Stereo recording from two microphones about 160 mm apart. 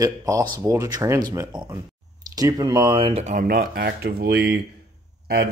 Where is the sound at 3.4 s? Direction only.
80° right.